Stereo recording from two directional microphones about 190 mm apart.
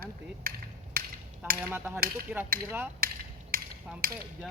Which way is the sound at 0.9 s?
50° right (ahead or behind).